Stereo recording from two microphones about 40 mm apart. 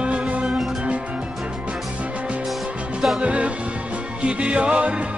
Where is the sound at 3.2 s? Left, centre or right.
Right.